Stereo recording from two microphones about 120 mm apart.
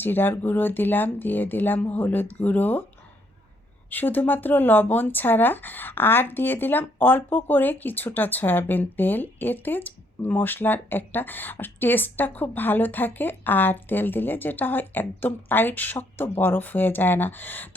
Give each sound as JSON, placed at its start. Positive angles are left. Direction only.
{"t": 0.0, "sound": "speech", "side_deg": 15}
{"t": 3.8, "sound": "speech", "side_deg": 15}